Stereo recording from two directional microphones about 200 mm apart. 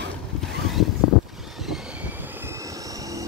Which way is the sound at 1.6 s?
5° right (ahead or behind).